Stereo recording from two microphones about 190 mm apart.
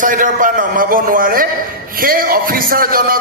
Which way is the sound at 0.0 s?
45° right (ahead or behind).